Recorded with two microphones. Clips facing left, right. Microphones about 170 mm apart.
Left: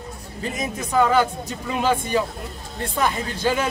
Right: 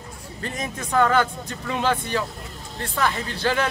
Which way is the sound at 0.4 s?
10° left (ahead or behind).